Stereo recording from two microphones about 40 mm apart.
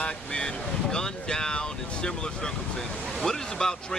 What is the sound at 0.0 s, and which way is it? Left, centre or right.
Speech, left.